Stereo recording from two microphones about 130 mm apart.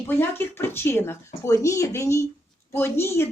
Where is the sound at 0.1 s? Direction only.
15° left (ahead or behind).